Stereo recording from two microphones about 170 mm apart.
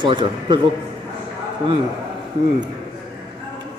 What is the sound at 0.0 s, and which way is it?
Speech, 30° right (ahead or behind).